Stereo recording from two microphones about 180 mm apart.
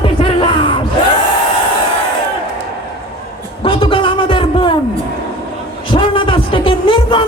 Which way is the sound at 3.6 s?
30° left (ahead or behind).